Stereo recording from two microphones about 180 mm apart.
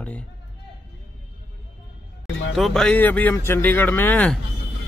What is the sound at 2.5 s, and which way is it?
Speech, centre (ahead or behind).